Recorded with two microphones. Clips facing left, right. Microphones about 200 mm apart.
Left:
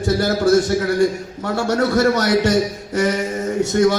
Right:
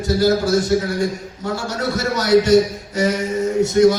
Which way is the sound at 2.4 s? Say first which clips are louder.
Right 3 dB; 65° left (ahead or behind).